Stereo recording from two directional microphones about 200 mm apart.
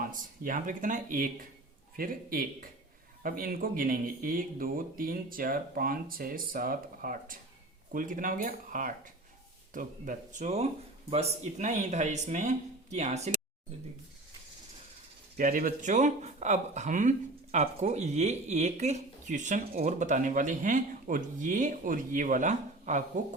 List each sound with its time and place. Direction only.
0.0 s speech: 45° right (ahead or behind)
15.4 s speech: 45° right (ahead or behind)